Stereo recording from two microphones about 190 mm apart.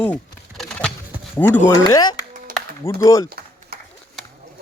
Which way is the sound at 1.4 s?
10° left (ahead or behind).